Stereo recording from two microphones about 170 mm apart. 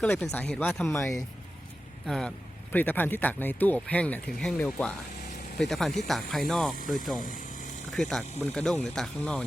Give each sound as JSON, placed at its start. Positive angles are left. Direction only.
{"t": 0.0, "sound": "speech", "side_deg": 5}
{"t": 2.0, "sound": "speech", "side_deg": 0}
{"t": 7.2, "sound": "speech", "side_deg": 50}
{"t": 7.9, "sound": "speech", "side_deg": 0}